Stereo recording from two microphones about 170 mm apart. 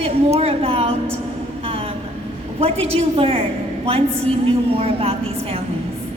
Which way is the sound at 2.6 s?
35° right (ahead or behind).